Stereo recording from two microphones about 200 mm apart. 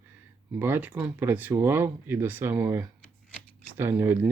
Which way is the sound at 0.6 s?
10° right (ahead or behind).